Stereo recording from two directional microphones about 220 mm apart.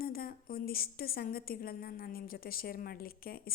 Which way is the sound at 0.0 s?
40° left (ahead or behind).